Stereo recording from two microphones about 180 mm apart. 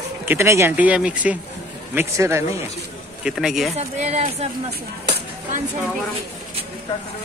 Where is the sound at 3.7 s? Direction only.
40° right (ahead or behind).